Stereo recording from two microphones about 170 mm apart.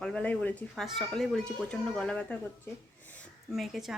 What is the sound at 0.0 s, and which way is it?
Speech, 5° left (ahead or behind).